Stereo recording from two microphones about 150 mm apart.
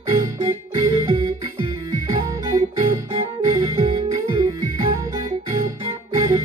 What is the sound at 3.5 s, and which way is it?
Music, 25° right (ahead or behind).